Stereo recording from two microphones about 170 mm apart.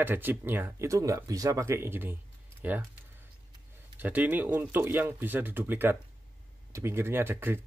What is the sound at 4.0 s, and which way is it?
Speech, 10° right (ahead or behind).